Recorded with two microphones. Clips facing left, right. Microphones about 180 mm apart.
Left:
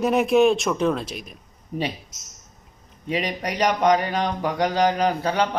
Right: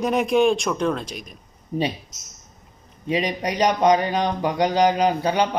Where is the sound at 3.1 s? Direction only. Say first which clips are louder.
Right 3 dB; 15° right (ahead or behind).